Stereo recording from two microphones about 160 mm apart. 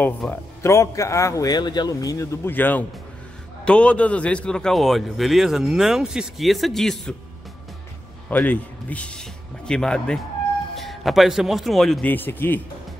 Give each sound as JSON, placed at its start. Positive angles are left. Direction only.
{"t": 0.2, "sound": "a man's voice", "side_deg": 5}
{"t": 0.6, "sound": "a man's voice", "side_deg": 20}
{"t": 8.3, "sound": "a man's voice", "side_deg": 10}